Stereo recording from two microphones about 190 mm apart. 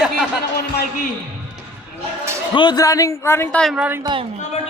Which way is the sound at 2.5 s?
20° left (ahead or behind).